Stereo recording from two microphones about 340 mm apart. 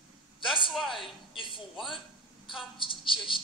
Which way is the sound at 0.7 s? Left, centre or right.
Centre.